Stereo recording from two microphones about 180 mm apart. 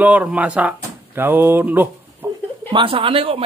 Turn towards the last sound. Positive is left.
turn(degrees=-30)  # may be behind; listen again after turning